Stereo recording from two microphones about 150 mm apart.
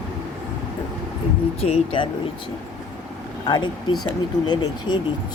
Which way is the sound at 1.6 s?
40° left (ahead or behind).